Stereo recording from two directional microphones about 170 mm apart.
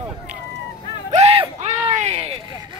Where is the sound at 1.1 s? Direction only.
40° right (ahead or behind).